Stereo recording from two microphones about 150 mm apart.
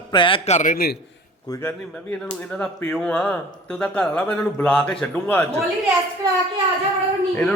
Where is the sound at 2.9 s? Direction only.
5° left (ahead or behind).